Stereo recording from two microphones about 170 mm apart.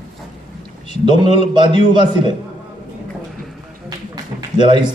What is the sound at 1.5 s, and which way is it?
Speech, 30° right (ahead or behind).